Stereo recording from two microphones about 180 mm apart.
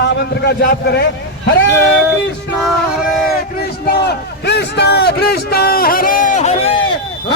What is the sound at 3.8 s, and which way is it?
A man's voice, 65° left (ahead or behind).